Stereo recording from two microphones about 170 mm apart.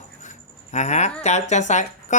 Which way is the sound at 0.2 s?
45° left (ahead or behind).